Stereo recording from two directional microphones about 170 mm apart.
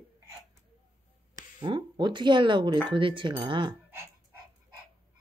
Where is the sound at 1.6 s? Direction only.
25° right (ahead or behind).